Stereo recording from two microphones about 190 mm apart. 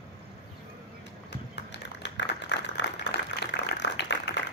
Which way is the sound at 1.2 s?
65° left (ahead or behind).